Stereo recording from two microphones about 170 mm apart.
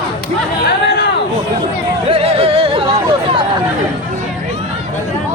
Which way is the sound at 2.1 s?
35° right (ahead or behind).